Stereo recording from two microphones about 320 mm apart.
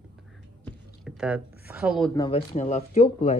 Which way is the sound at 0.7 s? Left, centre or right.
Centre.